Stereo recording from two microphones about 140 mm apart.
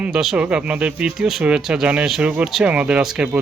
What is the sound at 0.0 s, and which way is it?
Speech, 5° right (ahead or behind).